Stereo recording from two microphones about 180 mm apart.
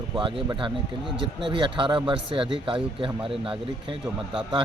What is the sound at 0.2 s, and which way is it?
Speech, 25° right (ahead or behind).